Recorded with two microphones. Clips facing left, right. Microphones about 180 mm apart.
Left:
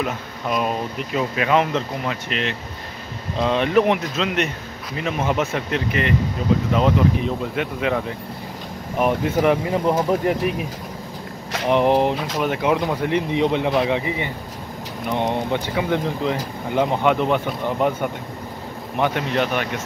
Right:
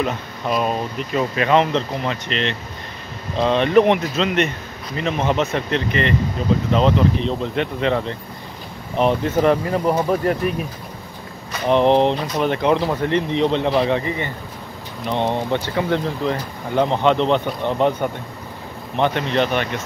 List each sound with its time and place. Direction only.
0.0 s speech: 5° left (ahead or behind)
12.0 s speech: 5° left (ahead or behind)
18.9 s speech: 10° left (ahead or behind)